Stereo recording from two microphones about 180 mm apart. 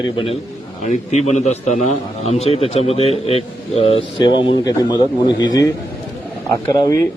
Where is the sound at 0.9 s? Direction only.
40° left (ahead or behind).